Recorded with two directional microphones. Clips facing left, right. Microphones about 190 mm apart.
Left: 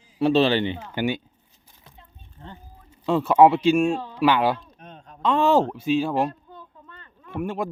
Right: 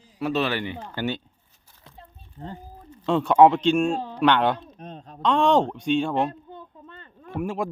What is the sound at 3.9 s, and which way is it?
Speech, 45° right (ahead or behind).